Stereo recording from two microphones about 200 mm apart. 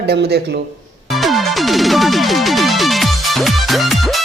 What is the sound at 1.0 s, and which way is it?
Music, centre (ahead or behind).